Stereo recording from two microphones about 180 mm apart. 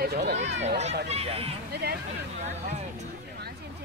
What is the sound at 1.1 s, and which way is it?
Speech, 35° right (ahead or behind).